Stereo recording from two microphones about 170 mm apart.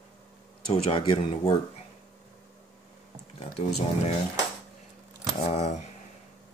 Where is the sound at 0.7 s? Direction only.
30° left (ahead or behind).